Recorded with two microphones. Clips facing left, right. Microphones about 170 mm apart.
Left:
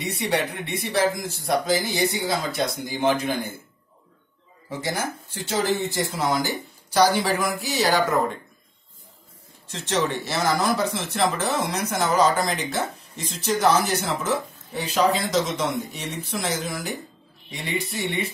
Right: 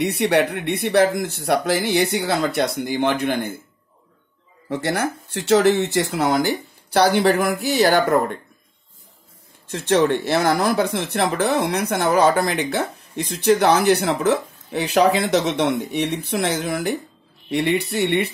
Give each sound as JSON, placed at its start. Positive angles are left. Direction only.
{"t": 0.0, "sound": "speech", "side_deg": -65}
{"t": 4.6, "sound": "speech", "side_deg": -65}
{"t": 9.7, "sound": "speech", "side_deg": -55}